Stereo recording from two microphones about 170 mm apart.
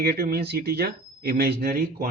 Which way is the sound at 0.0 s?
65° right (ahead or behind).